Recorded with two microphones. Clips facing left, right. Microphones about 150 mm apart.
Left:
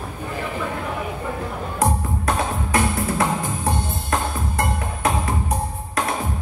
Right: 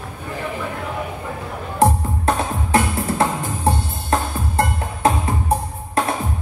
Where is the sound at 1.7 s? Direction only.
30° right (ahead or behind).